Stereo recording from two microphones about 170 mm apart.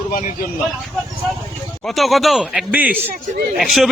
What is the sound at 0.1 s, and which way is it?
Speech, 50° left (ahead or behind).